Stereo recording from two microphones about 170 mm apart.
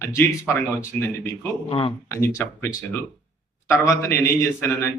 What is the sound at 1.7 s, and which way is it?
Speech, 30° left (ahead or behind).